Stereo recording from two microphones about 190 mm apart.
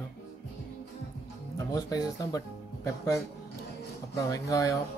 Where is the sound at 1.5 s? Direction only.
20° left (ahead or behind).